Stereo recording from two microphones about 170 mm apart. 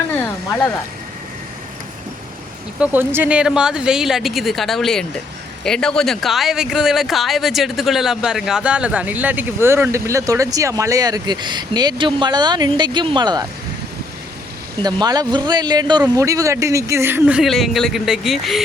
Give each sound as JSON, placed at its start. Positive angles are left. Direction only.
{"t": 0.2, "sound": "a sound", "side_deg": 10}
{"t": 2.8, "sound": "a woman's voice", "side_deg": -10}
{"t": 14.8, "sound": "speech", "side_deg": -25}